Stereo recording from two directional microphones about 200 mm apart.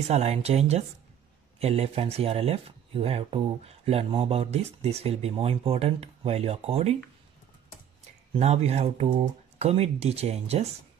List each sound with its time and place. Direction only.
0.1 s speech: 30° right (ahead or behind)
8.4 s speech: 30° right (ahead or behind)